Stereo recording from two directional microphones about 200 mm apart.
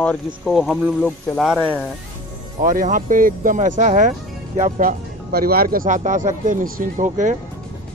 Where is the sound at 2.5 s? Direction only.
40° right (ahead or behind).